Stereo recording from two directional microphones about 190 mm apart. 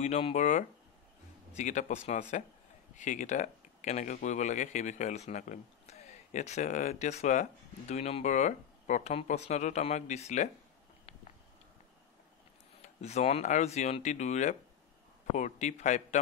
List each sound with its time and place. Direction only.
0.0 s speech: 35° left (ahead or behind)
12.8 s speech: 35° left (ahead or behind)